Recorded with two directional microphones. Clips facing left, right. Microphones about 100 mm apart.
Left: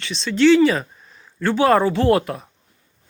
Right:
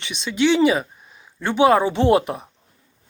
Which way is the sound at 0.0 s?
15° right (ahead or behind).